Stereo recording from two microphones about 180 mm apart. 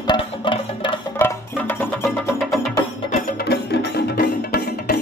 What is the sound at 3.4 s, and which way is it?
Music, 65° left (ahead or behind).